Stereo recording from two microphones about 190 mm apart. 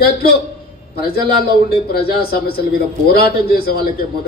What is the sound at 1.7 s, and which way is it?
A man's voice, 55° left (ahead or behind).